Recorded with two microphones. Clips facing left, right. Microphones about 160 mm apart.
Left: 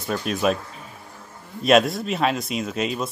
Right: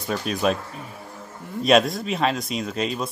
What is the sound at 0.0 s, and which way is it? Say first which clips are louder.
Speech: left 1 dB; centre (ahead or behind).